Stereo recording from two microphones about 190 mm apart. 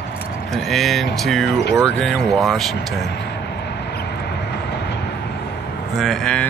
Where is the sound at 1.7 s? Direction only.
5° left (ahead or behind).